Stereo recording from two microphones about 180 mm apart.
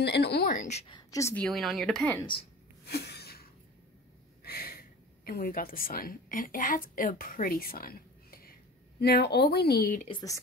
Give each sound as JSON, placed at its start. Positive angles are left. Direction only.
{"t": 0.0, "sound": "a sound", "side_deg": 65}
{"t": 0.6, "sound": "a woman's voice", "side_deg": 40}
{"t": 0.8, "sound": "a woman's voice", "side_deg": 20}
{"t": 1.4, "sound": "speech", "side_deg": 0}
{"t": 2.9, "sound": "a sound", "side_deg": 65}
{"t": 4.4, "sound": "speech", "side_deg": 60}